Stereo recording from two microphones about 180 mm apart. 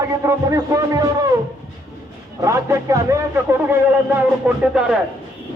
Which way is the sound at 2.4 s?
15° right (ahead or behind).